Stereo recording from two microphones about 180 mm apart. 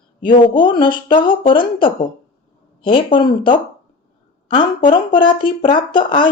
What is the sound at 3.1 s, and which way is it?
Speech, 25° left (ahead or behind).